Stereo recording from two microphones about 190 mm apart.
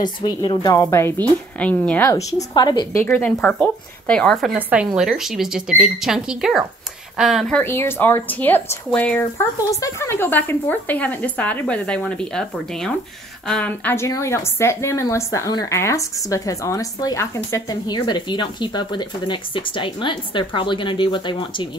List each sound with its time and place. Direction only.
0.4 s a woman's voice: 25° left (ahead or behind); by 4.5 s 5° left (ahead or behind)
4.6 s a woman's voice: 5° right (ahead or behind); by 21.6 s 25° left (ahead or behind)